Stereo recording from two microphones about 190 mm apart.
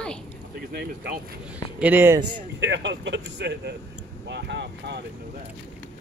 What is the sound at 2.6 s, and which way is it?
Speech, 70° right (ahead or behind).